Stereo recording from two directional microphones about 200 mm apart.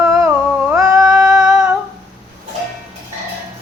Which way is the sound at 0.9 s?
5° right (ahead or behind).